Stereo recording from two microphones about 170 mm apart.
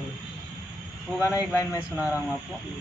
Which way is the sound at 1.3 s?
20° left (ahead or behind).